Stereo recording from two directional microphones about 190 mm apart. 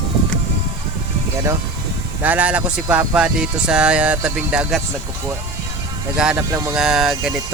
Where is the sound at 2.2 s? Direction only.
10° right (ahead or behind).